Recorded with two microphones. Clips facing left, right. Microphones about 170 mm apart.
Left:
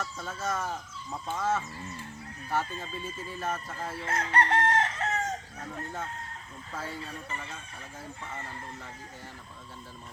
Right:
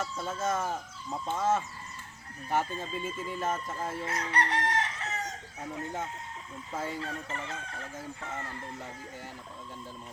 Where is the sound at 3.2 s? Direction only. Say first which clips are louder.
Right 1 dB; 20° right (ahead or behind).